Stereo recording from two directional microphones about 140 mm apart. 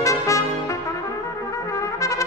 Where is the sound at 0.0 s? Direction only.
20° left (ahead or behind).